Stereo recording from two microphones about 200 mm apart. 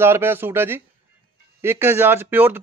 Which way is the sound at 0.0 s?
10° right (ahead or behind).